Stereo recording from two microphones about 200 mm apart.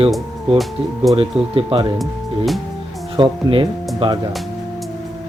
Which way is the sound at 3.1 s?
25° right (ahead or behind).